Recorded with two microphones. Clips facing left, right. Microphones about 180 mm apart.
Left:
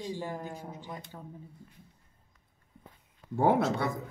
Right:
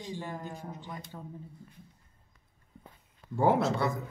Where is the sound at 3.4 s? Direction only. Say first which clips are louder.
Even; 55° left (ahead or behind).